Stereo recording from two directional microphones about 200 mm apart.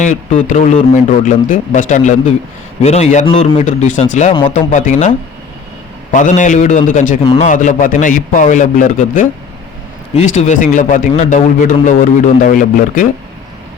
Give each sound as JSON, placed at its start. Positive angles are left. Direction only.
{"t": 0.0, "sound": "a man's voice", "side_deg": 40}
{"t": 6.1, "sound": "a man's voice", "side_deg": 40}